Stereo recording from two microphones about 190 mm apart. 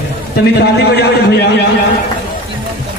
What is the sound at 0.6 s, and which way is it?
Speech, 60° left (ahead or behind).